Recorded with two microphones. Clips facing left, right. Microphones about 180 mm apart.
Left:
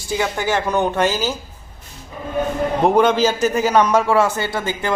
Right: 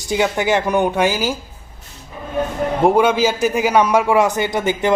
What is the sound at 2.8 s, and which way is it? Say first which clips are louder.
Speech: right 1 dB; 10° right (ahead or behind).